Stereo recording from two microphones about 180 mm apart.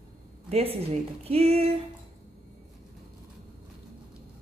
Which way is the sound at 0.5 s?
35° right (ahead or behind).